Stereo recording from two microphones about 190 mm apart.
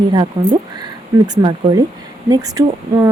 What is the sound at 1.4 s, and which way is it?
Speech, 25° right (ahead or behind).